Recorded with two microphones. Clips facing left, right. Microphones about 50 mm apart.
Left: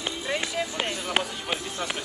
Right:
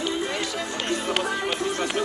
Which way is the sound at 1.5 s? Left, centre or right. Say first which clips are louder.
Right 5 dB; centre.